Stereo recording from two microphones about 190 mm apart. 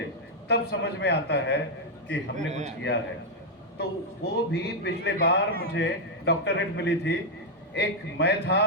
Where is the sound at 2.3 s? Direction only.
40° right (ahead or behind).